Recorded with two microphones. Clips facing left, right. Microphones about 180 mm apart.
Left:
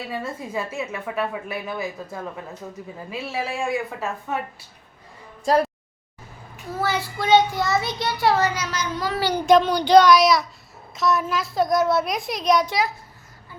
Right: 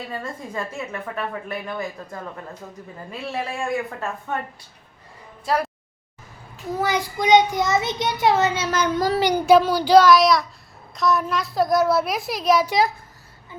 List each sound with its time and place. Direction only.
0.1 s a woman's voice: 5° left (ahead or behind)
3.1 s a woman's voice: centre (ahead or behind)
6.7 s a child's voice: 15° right (ahead or behind)
8.7 s speech: 55° right (ahead or behind)
9.3 s a woman's voice: 5° right (ahead or behind)